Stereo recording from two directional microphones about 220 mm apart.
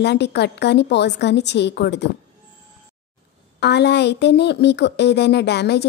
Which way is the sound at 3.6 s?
50° left (ahead or behind).